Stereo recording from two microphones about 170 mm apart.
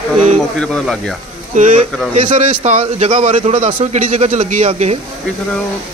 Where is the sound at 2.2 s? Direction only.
50° right (ahead or behind).